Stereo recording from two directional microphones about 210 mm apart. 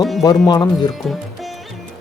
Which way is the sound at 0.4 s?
20° left (ahead or behind).